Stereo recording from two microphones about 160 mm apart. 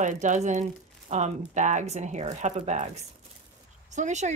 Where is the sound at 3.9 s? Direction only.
50° right (ahead or behind).